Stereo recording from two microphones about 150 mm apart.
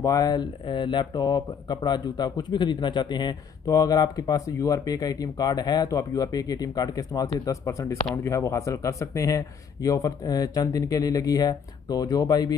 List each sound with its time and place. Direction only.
0.0 s speech: 25° left (ahead or behind)